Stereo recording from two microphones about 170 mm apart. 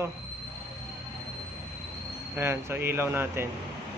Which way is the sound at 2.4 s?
15° right (ahead or behind).